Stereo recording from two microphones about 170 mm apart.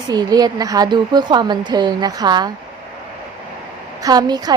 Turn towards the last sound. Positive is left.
turn(degrees=-25)  # may be behind; listen again after turning